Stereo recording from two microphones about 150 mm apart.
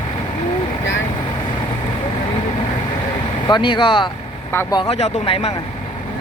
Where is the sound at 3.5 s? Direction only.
35° left (ahead or behind).